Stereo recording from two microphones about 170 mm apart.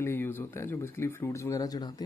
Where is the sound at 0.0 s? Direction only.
15° left (ahead or behind).